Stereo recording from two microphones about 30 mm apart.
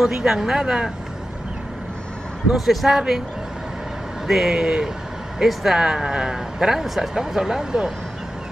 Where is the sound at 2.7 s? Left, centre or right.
Centre.